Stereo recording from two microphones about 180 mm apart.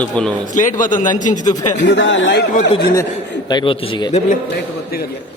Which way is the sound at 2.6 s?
35° left (ahead or behind).